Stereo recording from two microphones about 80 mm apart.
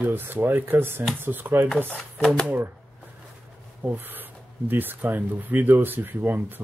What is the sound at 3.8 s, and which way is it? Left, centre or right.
Speech, right.